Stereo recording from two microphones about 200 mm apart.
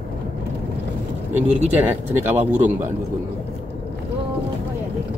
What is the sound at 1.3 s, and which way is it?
Speech, 35° right (ahead or behind).